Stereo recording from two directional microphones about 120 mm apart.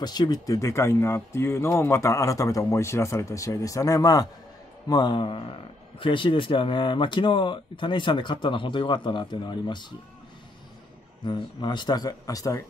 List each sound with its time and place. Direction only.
0.0 s a man's voice: 35° left (ahead or behind)
11.2 s a man's voice: 40° left (ahead or behind)